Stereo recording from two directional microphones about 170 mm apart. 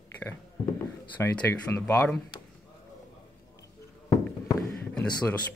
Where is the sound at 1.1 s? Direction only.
10° left (ahead or behind).